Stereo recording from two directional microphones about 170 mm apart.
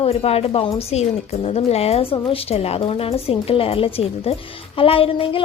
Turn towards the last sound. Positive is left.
turn(degrees=30)  # may be behind; listen again after turning